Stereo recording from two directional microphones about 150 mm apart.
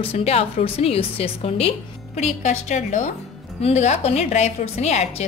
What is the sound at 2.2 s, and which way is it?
A woman's voice, 50° left (ahead or behind).